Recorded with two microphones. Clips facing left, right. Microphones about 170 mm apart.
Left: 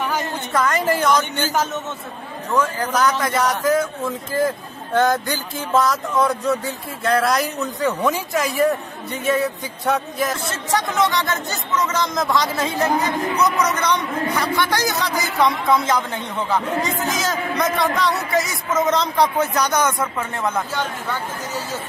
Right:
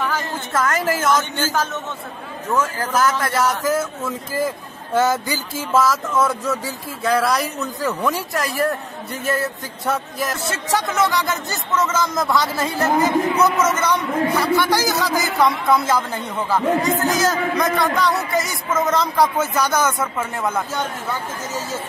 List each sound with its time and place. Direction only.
0.0 s a sound: 15° left (ahead or behind)
0.9 s a man's voice: 20° left (ahead or behind)
2.5 s speech: 5° right (ahead or behind)
4.9 s speech: 5° right (ahead or behind)